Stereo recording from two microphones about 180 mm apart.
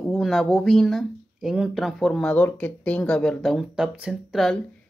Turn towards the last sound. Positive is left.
turn(degrees=0)  # may be behind; listen again after turning